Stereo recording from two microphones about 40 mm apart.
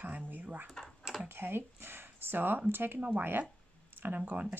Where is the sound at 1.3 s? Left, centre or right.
Right.